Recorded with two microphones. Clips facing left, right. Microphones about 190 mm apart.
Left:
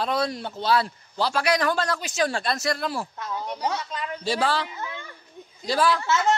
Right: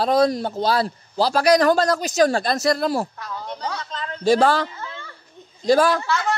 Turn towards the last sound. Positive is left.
turn(degrees=20)  # may be behind; listen again after turning